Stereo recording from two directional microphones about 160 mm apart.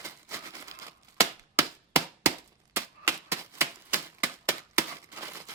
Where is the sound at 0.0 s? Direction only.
15° right (ahead or behind).